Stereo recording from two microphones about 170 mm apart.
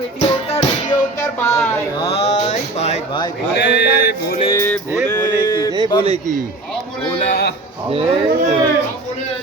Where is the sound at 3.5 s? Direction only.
85° left.